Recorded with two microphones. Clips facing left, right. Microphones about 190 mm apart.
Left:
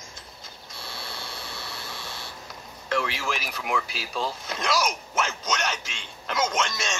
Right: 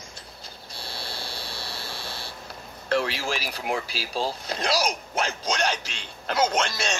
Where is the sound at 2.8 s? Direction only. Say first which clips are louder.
Right 2 dB; 35° right (ahead or behind).